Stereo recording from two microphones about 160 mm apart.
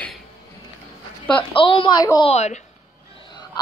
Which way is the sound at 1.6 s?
30° left (ahead or behind).